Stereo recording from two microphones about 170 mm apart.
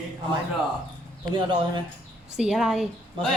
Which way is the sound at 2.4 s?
Centre (ahead or behind).